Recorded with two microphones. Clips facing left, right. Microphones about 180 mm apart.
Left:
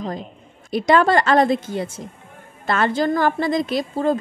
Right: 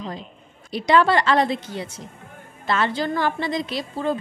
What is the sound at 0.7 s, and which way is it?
A woman's voice, 50° left (ahead or behind).